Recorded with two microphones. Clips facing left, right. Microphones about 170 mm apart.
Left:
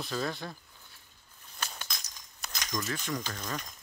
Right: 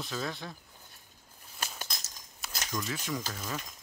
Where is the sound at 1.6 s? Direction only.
35° right (ahead or behind).